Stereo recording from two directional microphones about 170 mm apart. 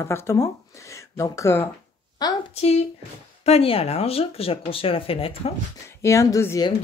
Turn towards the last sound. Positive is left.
turn(degrees=20)  # may be behind; listen again after turning